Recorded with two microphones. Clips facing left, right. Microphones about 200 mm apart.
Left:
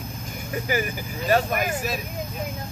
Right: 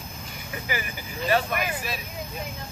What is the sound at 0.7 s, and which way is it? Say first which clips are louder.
Speech: left 6 dB; 45° left (ahead or behind).